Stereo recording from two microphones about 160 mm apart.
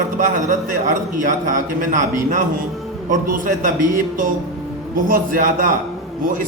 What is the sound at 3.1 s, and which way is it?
Speech, 55° right (ahead or behind).